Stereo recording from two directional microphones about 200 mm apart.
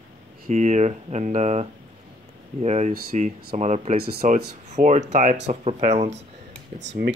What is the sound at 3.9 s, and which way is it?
Speech, 50° right (ahead or behind).